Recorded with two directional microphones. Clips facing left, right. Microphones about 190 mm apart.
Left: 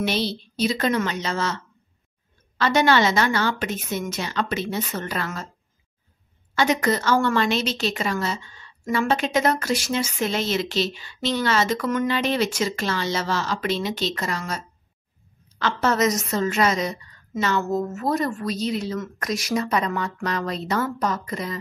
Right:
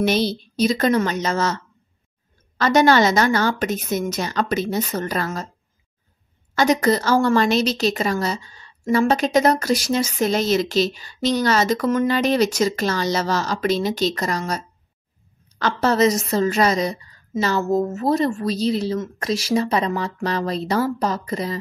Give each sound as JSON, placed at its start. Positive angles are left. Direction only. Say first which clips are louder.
{"t": 0.0, "sound": "a woman's voice", "louder": "right 5 dB", "side_deg": -45}
{"t": 6.5, "sound": "speech", "louder": "right 4 dB", "side_deg": -40}
{"t": 15.8, "sound": "speech", "louder": "right 4 dB", "side_deg": -30}